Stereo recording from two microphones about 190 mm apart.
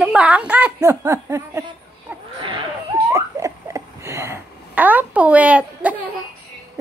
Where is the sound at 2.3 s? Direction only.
25° right (ahead or behind).